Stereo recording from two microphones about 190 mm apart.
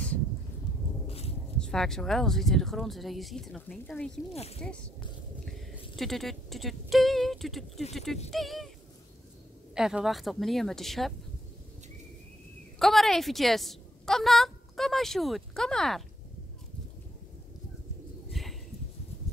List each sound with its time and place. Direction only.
1.0 s a sound: 30° left (ahead or behind)
1.6 s speech: 5° left (ahead or behind)
4.3 s speech: 35° left (ahead or behind)
5.4 s speech: centre (ahead or behind)
9.8 s speech: 5° right (ahead or behind)
12.7 s a woman's voice: centre (ahead or behind)
18.3 s a sound: centre (ahead or behind)